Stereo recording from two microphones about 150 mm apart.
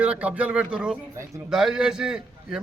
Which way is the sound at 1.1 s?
20° right (ahead or behind).